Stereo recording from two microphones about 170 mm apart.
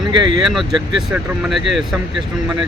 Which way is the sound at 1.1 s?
Centre (ahead or behind).